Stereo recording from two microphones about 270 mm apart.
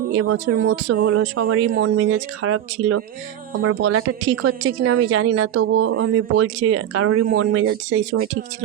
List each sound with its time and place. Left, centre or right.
0.1 s speech: right